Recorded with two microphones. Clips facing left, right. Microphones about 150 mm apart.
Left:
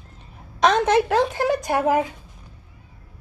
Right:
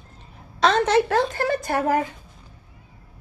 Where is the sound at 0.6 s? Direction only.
15° left (ahead or behind).